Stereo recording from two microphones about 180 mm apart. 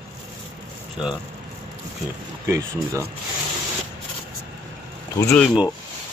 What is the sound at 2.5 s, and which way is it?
Speech, 15° right (ahead or behind).